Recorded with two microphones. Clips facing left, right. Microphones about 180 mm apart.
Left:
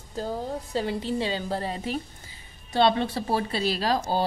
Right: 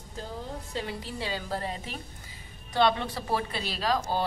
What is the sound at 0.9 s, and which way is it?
A woman's voice, 25° left (ahead or behind).